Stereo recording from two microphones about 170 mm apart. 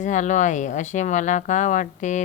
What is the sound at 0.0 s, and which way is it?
Speech, 45° left (ahead or behind).